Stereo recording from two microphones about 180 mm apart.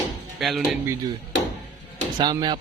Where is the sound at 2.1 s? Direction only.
25° right (ahead or behind).